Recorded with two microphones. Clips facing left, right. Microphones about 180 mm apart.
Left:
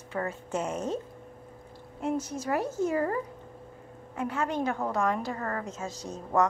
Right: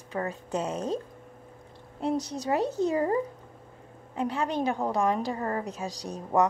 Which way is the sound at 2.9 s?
20° right (ahead or behind).